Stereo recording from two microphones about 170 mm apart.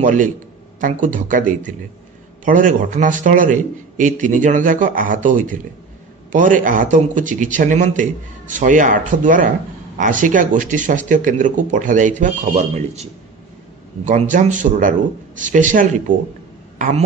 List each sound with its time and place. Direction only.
0.0 s a man's voice: 50° right (ahead or behind)
14.0 s a man's voice: 50° right (ahead or behind)